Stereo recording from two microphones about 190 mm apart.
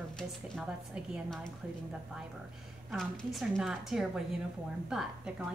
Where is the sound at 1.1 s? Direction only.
5° left (ahead or behind).